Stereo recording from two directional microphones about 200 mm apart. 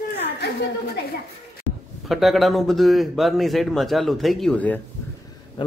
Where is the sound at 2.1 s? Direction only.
Centre (ahead or behind).